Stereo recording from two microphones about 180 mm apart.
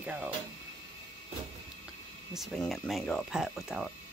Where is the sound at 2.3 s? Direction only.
Centre (ahead or behind).